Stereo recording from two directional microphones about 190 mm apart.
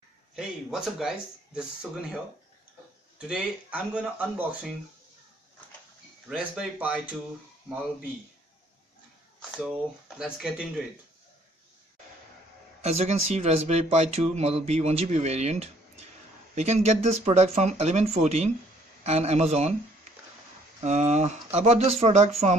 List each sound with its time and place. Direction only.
0.4 s speech: 5° right (ahead or behind)
3.2 s speech: 5° right (ahead or behind)
6.2 s speech: 5° right (ahead or behind)
9.4 s speech: centre (ahead or behind)
12.8 s speech: 35° right (ahead or behind)
20.8 s speech: 35° right (ahead or behind)